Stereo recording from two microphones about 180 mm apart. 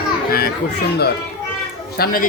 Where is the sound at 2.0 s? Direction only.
55° left (ahead or behind).